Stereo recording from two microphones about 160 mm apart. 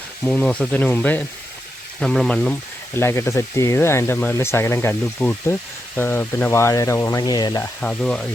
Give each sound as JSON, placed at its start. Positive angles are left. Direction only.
{"t": 0.3, "sound": "speech", "side_deg": 5}
{"t": 7.6, "sound": "speech", "side_deg": 10}